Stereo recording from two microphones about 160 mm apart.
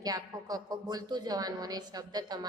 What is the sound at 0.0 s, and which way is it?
A woman's voice, 25° right (ahead or behind).